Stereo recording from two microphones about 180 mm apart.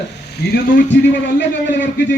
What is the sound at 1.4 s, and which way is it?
Speech, 85° left.